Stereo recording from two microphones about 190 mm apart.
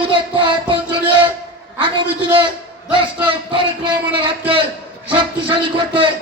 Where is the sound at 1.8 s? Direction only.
25° right (ahead or behind).